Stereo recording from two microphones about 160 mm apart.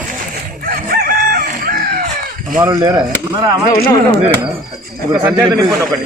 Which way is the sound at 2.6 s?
20° right (ahead or behind).